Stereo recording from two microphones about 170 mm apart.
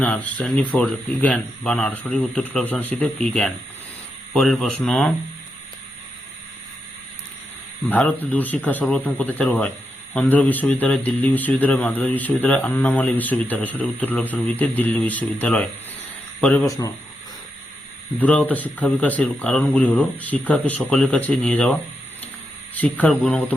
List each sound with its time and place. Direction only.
0.0 s a man's voice: 5° left (ahead or behind)
7.9 s a man's voice: 10° left (ahead or behind)
16.6 s speech: 20° left (ahead or behind)
18.2 s a man's voice: 10° left (ahead or behind)